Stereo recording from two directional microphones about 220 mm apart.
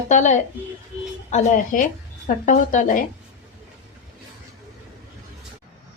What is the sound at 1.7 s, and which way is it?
A woman's voice, 35° left (ahead or behind).